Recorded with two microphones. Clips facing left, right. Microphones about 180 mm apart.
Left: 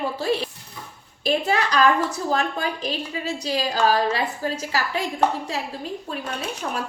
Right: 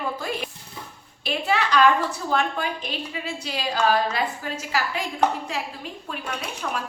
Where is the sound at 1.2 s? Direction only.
40° left (ahead or behind).